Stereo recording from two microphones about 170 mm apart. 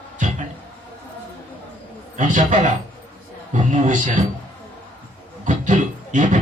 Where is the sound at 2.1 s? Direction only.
50° right (ahead or behind).